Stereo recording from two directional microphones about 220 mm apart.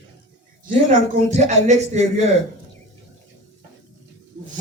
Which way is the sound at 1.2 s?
30° right (ahead or behind).